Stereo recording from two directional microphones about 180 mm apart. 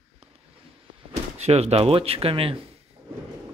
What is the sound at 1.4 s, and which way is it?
Speech, 35° right (ahead or behind).